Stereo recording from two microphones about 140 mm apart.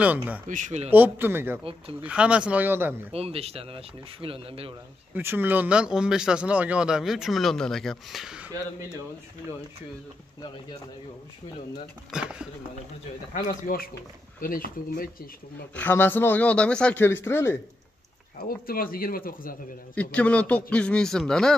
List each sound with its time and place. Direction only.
0.0 s speech: 10° right (ahead or behind)
0.5 s speech: 60° right (ahead or behind)
0.8 s speech: 10° right (ahead or behind)
1.6 s speech: 40° right (ahead or behind)
2.0 s speech: 5° right (ahead or behind)
3.1 s speech: 45° right (ahead or behind)
5.1 s speech: 15° right (ahead or behind)
12.1 s speech: 5° right (ahead or behind)
13.7 s speech: 90° left
15.7 s speech: 15° left (ahead or behind)
18.7 s speech: 90° left
20.0 s speech: 10° left (ahead or behind)